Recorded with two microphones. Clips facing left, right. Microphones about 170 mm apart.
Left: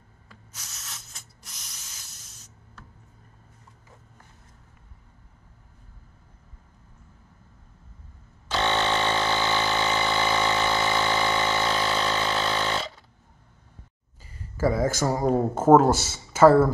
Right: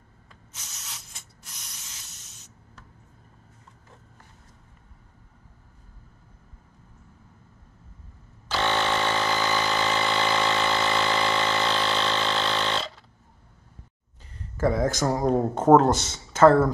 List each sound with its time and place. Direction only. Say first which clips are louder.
0.8 s ratchet: even; centre (ahead or behind)
8.5 s vehicle: even; 20° left (ahead or behind)
9.9 s engine: even; 5° left (ahead or behind)
14.2 s speech: even; 5° left (ahead or behind)